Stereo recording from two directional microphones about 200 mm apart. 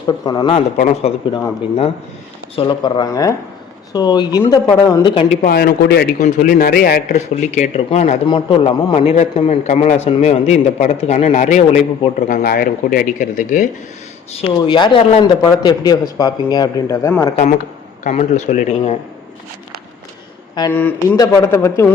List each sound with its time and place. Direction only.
0.3 s a man's voice: 25° left (ahead or behind)
0.8 s a man's voice: 35° left (ahead or behind)
1.3 s speech: 15° left (ahead or behind)
2.6 s a man's voice: 25° left (ahead or behind)
5.5 s a man's voice: 50° left (ahead or behind)
14.3 s a man's voice: 25° left (ahead or behind)
18.0 s a man's voice: 35° left (ahead or behind)
20.6 s speech: 10° left (ahead or behind)